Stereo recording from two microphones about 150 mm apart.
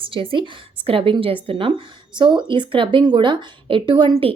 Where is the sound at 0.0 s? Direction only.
35° right (ahead or behind).